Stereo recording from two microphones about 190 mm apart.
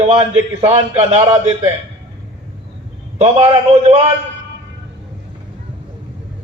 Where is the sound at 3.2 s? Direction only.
30° right (ahead or behind).